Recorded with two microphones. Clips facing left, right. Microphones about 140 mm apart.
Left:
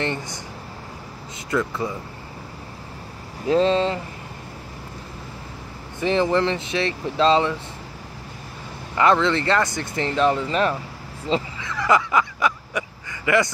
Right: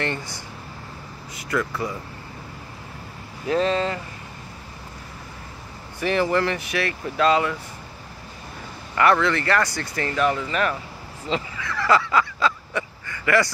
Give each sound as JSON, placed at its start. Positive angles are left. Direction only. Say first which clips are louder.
{"t": 0.0, "sound": "speech", "louder": "left 1 dB", "side_deg": 20}
{"t": 3.4, "sound": "speech", "louder": "left 3 dB", "side_deg": 30}
{"t": 5.9, "sound": "speech", "louder": "left 2 dB", "side_deg": 20}
{"t": 8.9, "sound": "speech", "louder": "left 1 dB", "side_deg": 20}
{"t": 11.6, "sound": "a sound", "louder": "right 2 dB", "side_deg": 20}